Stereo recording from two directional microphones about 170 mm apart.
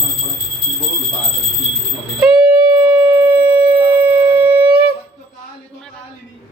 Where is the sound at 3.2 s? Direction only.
5° right (ahead or behind).